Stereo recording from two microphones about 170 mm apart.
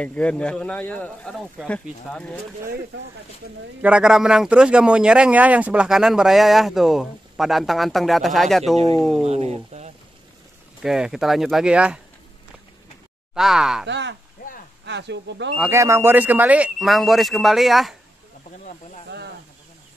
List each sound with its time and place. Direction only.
0.0 s speech: 5° left (ahead or behind)
3.8 s a man's voice: 5° right (ahead or behind)
9.2 s speech: 40° right (ahead or behind)
10.8 s a man's voice: 5° right (ahead or behind)
13.3 s a man's voice: 5° right (ahead or behind)
13.8 s speech: 90° right
14.4 s a sound: 60° left (ahead or behind)
14.9 s speech: 90° right
15.6 s a man's voice: 15° right (ahead or behind); by 17.9 s centre (ahead or behind)